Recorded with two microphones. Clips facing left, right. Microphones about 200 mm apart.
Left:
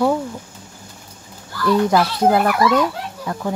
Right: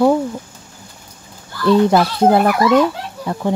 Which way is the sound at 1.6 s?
30° right (ahead or behind).